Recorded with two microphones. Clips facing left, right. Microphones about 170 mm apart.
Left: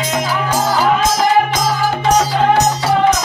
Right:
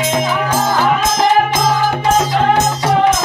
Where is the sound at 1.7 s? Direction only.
25° right (ahead or behind).